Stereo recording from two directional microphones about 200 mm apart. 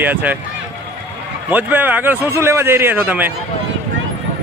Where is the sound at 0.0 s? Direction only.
10° right (ahead or behind).